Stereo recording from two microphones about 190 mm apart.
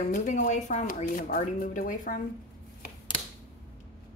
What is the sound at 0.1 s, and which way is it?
A woman's voice, 40° left (ahead or behind).